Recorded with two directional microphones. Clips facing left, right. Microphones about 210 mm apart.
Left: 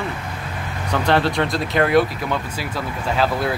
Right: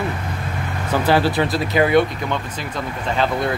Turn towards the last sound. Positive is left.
turn(degrees=5)  # may be behind; listen again after turning